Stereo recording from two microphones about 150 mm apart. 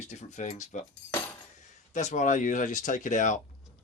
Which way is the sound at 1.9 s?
50° left (ahead or behind).